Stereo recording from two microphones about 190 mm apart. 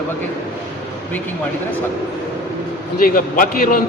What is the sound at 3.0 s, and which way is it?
Speech, 45° left (ahead or behind).